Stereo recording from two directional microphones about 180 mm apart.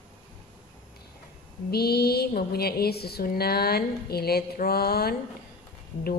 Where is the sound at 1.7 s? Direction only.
60° left (ahead or behind).